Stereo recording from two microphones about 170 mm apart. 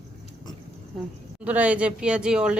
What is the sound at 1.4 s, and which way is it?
A woman's voice, 10° right (ahead or behind).